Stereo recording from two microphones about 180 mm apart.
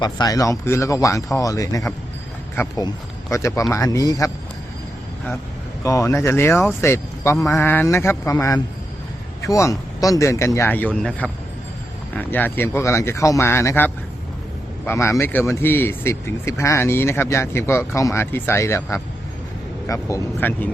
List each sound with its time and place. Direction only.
0.0 s speech: 20° left (ahead or behind)
5.8 s speech: 20° left (ahead or behind)